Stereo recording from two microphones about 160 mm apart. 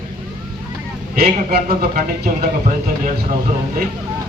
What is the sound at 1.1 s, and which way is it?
A man's voice, 65° right (ahead or behind).